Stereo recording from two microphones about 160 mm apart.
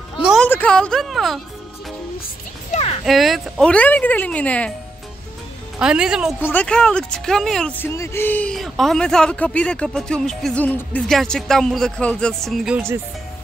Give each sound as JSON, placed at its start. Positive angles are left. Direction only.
{"t": 0.2, "sound": "a sound", "side_deg": 0}
{"t": 0.5, "sound": "speech", "side_deg": 10}
{"t": 2.7, "sound": "a sound", "side_deg": 40}
{"t": 3.1, "sound": "speech", "side_deg": 0}
{"t": 5.8, "sound": "speech", "side_deg": -5}
{"t": 6.4, "sound": "speech", "side_deg": 10}